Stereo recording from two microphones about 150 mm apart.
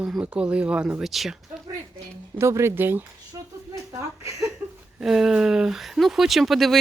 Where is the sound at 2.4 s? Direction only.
20° right (ahead or behind).